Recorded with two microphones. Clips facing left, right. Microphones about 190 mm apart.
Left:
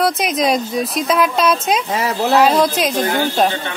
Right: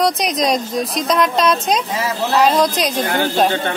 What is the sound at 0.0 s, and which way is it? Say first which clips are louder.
A woman's voice: even; 5° left (ahead or behind).